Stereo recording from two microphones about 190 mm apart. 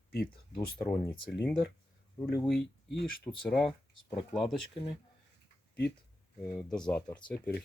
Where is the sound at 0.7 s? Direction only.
10° left (ahead or behind).